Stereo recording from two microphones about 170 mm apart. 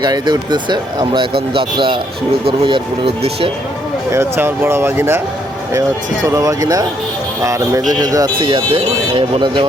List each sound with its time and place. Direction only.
0.0 s speech: 25° right (ahead or behind)
4.1 s speech: 15° right (ahead or behind)
6.2 s speech: 20° right (ahead or behind)